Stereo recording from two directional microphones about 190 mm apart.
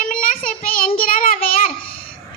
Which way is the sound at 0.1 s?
45° left (ahead or behind).